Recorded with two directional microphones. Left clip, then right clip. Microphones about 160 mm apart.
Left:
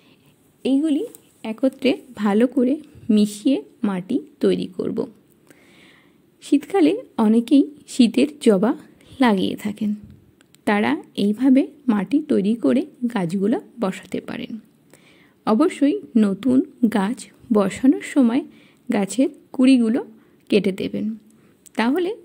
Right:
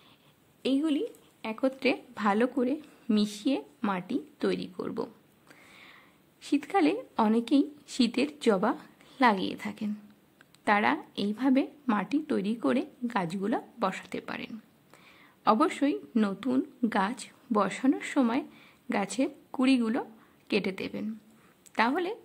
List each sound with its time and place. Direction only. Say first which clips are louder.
0.6 s a woman's voice: left 8 dB; 25° left (ahead or behind)
6.4 s a woman's voice: left 8 dB; 30° left (ahead or behind)